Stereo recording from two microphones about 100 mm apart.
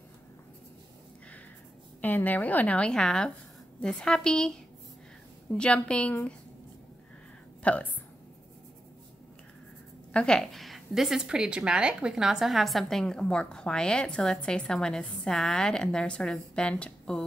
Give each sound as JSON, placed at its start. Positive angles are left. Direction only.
{"t": 2.0, "sound": "a woman's voice", "side_deg": 15}
{"t": 7.6, "sound": "a woman's voice", "side_deg": 15}
{"t": 10.1, "sound": "a woman's voice", "side_deg": 5}